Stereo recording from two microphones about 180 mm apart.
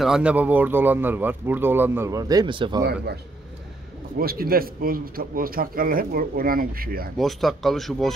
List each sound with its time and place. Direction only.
0.0 s speech: 5° right (ahead or behind); by 2.8 s 25° right (ahead or behind)
2.8 s a man's voice: 65° right (ahead or behind)
4.2 s a man's voice: 55° right (ahead or behind)
7.2 s speech: centre (ahead or behind)